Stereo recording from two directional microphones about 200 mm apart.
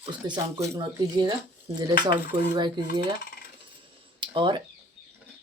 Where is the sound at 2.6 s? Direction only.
20° right (ahead or behind).